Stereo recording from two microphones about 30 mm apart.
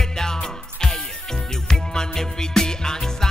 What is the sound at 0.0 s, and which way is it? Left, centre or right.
Music, centre.